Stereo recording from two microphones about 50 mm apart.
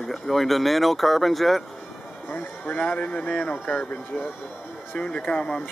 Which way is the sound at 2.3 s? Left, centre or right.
Left.